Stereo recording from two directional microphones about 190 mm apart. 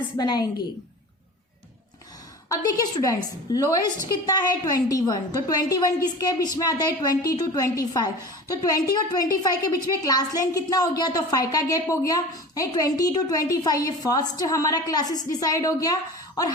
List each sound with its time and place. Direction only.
0.2 s a woman's voice: 20° left (ahead or behind)
2.5 s a woman's voice: 20° left (ahead or behind)